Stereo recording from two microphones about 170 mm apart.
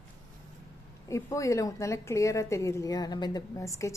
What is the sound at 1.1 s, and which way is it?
A woman's voice, 20° left (ahead or behind).